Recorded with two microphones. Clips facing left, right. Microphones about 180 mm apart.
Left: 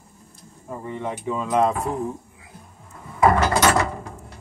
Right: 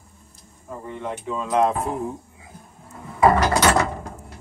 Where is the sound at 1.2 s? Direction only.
5° left (ahead or behind).